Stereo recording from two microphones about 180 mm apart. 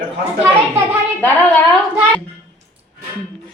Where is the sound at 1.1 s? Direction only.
10° left (ahead or behind).